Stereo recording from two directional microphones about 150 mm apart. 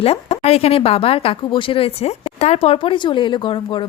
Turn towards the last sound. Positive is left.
turn(degrees=30)  # may be behind; listen again after turning